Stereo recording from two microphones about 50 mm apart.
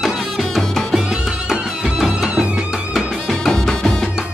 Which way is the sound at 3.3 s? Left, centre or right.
Centre.